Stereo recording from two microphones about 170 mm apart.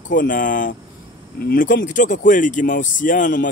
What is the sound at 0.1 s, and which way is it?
Speech, 50° left (ahead or behind).